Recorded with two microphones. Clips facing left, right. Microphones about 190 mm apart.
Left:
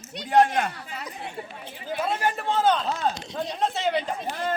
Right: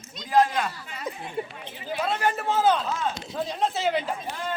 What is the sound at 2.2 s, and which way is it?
A man's voice, centre (ahead or behind).